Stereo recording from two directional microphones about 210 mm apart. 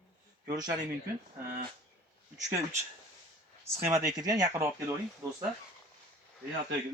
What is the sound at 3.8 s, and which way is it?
Speech, 15° right (ahead or behind).